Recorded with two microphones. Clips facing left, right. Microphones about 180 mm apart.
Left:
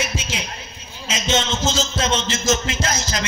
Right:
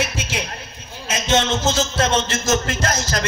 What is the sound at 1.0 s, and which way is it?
A man's voice, 60° right (ahead or behind).